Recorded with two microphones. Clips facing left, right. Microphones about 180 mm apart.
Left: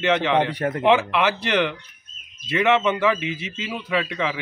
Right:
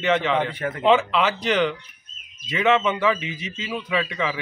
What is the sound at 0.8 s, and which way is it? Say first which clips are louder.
Speech: right 1 dB; 15° left (ahead or behind).